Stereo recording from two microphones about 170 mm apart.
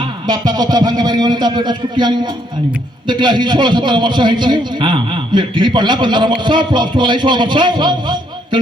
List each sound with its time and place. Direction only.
0.3 s a man's voice: 25° right (ahead or behind)